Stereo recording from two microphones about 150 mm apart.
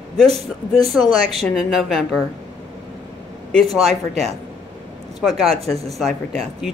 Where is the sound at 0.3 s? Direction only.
40° right (ahead or behind).